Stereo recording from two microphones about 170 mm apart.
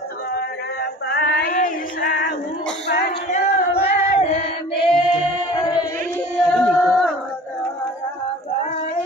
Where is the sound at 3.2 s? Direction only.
40° left (ahead or behind).